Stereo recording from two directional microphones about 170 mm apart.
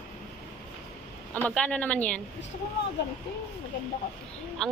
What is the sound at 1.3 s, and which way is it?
Speech, 10° left (ahead or behind).